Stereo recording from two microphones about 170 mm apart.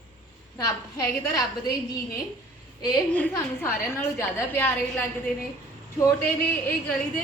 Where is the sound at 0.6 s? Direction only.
15° left (ahead or behind).